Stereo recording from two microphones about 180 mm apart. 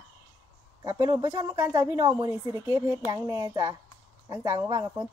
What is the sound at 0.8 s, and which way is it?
Speech, 20° right (ahead or behind).